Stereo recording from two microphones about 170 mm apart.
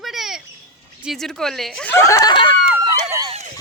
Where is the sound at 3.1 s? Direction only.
20° right (ahead or behind).